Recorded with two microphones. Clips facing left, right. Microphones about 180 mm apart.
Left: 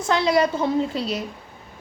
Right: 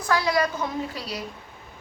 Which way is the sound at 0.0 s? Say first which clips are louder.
Left 4 dB; 25° left (ahead or behind).